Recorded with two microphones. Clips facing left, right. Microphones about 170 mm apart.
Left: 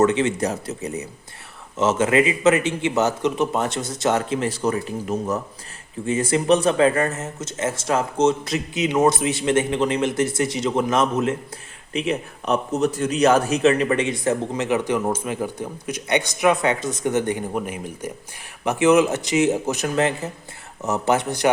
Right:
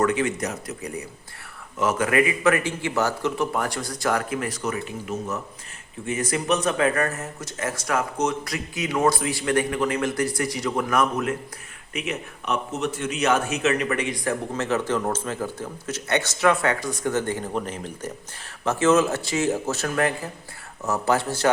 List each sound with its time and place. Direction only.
0.0 s a man's voice: 25° left (ahead or behind)
14.5 s speech: 15° left (ahead or behind)